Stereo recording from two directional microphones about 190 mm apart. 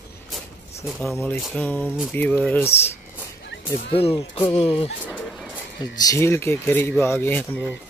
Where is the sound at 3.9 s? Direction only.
30° left (ahead or behind).